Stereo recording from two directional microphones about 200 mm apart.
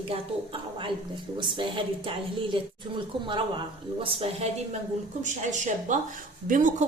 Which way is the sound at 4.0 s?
25° right (ahead or behind).